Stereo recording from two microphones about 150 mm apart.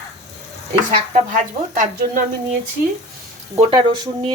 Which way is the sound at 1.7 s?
60° right (ahead or behind).